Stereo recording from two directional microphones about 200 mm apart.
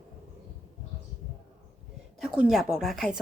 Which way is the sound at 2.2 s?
5° right (ahead or behind).